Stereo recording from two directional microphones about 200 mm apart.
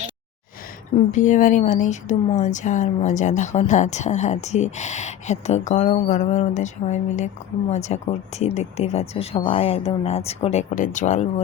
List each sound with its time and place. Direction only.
1.1 s a woman's voice: 40° left (ahead or behind)